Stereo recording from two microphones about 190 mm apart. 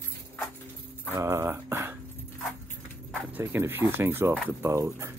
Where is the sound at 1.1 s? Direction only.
15° right (ahead or behind).